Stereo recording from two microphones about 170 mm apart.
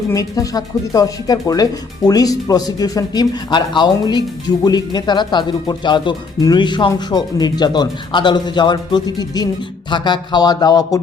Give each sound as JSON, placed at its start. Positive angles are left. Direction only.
{"t": 0.1, "sound": "speech", "side_deg": 20}